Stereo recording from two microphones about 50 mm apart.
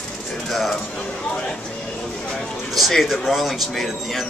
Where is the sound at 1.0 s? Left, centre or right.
Centre.